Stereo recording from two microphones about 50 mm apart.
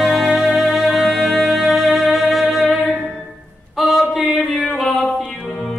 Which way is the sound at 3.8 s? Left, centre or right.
Centre.